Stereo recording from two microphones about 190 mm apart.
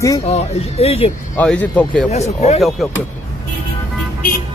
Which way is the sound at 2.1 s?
35° left (ahead or behind).